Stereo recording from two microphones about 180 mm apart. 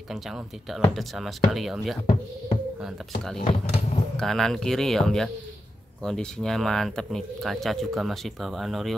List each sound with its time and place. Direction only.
0.1 s speech: centre (ahead or behind)
3.3 s speech: 35° left (ahead or behind)
4.2 s speech: centre (ahead or behind)